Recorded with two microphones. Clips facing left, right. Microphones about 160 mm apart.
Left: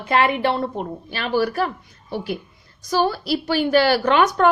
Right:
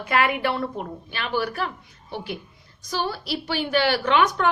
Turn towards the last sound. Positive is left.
turn(degrees=45)  # may be behind; listen again after turning